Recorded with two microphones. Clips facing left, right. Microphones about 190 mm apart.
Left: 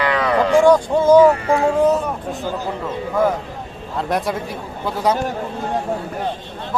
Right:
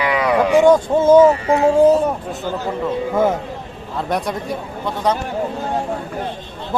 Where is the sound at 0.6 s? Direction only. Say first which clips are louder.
Right 1 dB; 20° right (ahead or behind).